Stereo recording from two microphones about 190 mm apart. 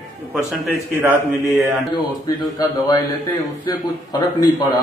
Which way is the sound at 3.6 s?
20° left (ahead or behind).